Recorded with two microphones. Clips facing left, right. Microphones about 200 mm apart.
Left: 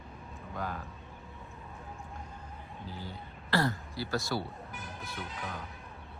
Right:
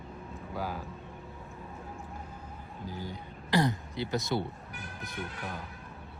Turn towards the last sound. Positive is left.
turn(degrees=-60)  # may be behind; listen again after turning